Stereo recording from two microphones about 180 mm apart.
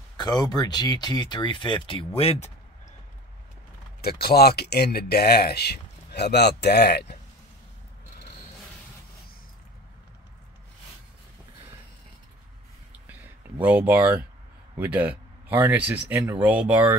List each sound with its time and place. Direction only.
0.2 s speech: 20° left (ahead or behind)
4.0 s speech: 60° left (ahead or behind)
13.0 s a sound: 10° right (ahead or behind)
14.8 s speech: 10° right (ahead or behind)